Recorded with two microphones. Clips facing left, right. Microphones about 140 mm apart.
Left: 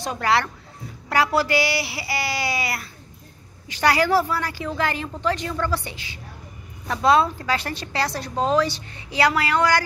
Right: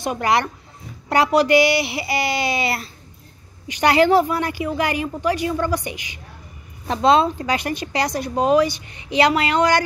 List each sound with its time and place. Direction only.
0.0 s speech: 15° right (ahead or behind)